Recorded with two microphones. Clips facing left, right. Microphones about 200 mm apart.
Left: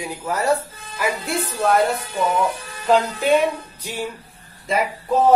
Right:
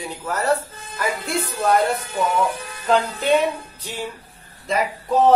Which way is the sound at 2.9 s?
10° left (ahead or behind).